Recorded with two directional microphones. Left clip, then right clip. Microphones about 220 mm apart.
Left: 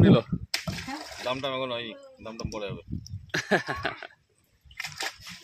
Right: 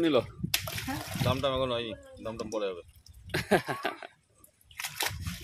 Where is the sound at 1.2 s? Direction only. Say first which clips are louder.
Right 1 dB; 45° right (ahead or behind).